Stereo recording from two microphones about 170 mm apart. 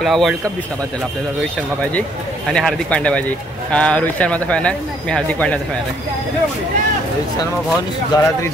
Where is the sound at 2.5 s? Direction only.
5° left (ahead or behind).